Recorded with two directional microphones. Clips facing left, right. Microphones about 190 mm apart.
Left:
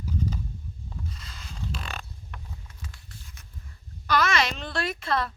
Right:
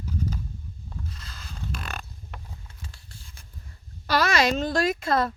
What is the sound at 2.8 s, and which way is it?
Clip-clop, 30° right (ahead or behind).